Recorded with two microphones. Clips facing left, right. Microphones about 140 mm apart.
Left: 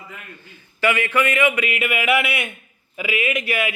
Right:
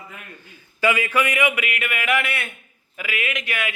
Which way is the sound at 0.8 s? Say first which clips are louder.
Left 1 dB; 10° right (ahead or behind).